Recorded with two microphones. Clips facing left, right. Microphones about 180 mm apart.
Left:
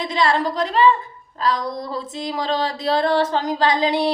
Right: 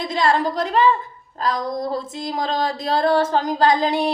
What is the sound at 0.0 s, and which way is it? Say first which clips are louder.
Female singing: even; 45° right (ahead or behind).